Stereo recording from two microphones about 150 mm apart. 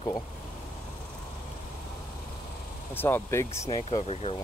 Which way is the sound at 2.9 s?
15° left (ahead or behind).